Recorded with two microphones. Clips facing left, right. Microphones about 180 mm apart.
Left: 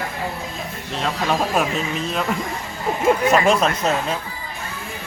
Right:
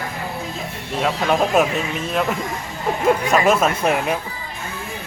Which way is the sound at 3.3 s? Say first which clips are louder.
Even; 5° right (ahead or behind).